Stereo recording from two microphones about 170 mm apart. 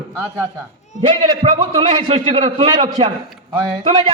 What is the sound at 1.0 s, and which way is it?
A man's voice, 30° right (ahead or behind).